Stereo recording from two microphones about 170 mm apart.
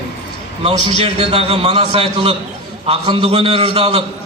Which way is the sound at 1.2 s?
35° right (ahead or behind).